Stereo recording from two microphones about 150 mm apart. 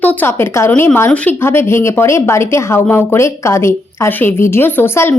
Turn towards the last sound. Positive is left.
turn(degrees=15)  # may be behind; listen again after turning